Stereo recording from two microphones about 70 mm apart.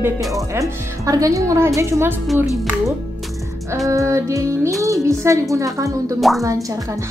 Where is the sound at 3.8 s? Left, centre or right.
Right.